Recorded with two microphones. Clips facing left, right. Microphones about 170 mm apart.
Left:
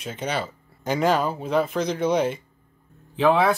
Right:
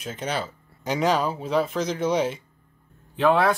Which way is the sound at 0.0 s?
5° right (ahead or behind).